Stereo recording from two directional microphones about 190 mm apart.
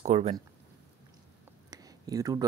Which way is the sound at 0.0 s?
35° right (ahead or behind).